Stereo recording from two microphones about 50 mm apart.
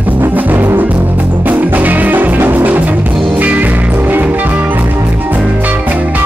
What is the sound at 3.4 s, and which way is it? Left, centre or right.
Music, right.